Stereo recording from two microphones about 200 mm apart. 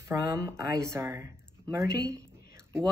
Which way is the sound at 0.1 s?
15° right (ahead or behind).